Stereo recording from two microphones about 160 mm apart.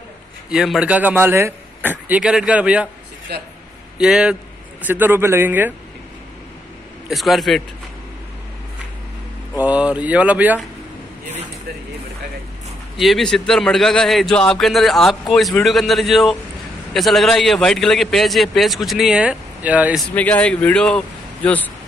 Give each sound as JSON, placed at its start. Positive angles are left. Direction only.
{"t": 0.5, "sound": "a man's voice", "side_deg": -5}
{"t": 3.3, "sound": "speech", "side_deg": -90}
{"t": 4.0, "sound": "a man's voice", "side_deg": -5}
{"t": 7.1, "sound": "a man's voice", "side_deg": 0}
{"t": 9.6, "sound": "a man's voice", "side_deg": -10}
{"t": 12.9, "sound": "a man's voice", "side_deg": 0}
{"t": 20.2, "sound": "speech", "side_deg": 10}